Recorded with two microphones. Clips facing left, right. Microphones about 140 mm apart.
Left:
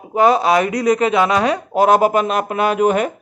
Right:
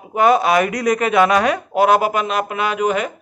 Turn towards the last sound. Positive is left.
turn(degrees=45)  # may be behind; listen again after turning